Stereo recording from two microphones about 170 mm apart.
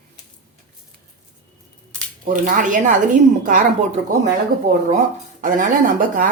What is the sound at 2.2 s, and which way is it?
Speech, 50° right (ahead or behind).